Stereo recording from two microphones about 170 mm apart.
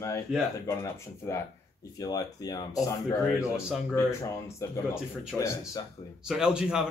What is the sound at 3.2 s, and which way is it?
Speech, 5° right (ahead or behind).